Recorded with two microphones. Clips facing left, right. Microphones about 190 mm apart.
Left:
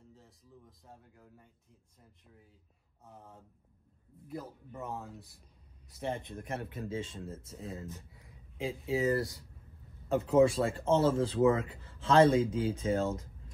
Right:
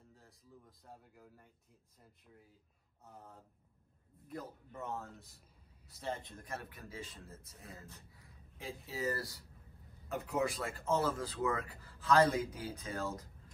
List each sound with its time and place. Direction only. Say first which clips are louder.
0.1 s speech: left 3 dB; centre (ahead or behind)
3.1 s speech: left 2 dB; 5° left (ahead or behind); by 13.3 s 25° left (ahead or behind)